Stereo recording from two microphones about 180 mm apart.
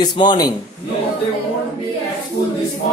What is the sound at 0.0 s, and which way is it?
Music, 25° left (ahead or behind).